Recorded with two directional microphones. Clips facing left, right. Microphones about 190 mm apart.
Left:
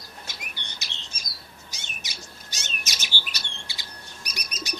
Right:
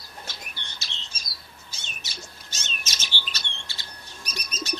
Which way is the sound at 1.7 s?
15° left (ahead or behind).